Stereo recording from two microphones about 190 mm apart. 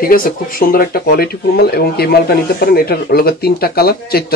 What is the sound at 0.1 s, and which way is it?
Speech, 50° left (ahead or behind).